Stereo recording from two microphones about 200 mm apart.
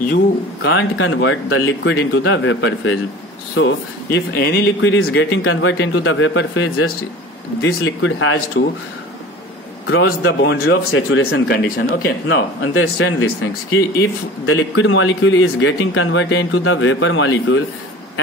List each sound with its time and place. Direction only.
0.1 s a man's voice: 60° left (ahead or behind); by 3.0 s 75° left (ahead or behind)
3.5 s a man's voice: 60° left (ahead or behind)
9.8 s speech: 75° left (ahead or behind); by 11.0 s 50° left (ahead or behind)
11.1 s speech: 75° left (ahead or behind); by 12.4 s 55° left (ahead or behind)
12.7 s a man's voice: 90° left